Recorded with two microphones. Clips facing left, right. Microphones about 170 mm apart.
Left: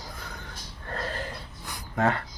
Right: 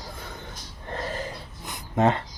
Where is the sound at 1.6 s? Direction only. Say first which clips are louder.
Right 4 dB; 20° right (ahead or behind).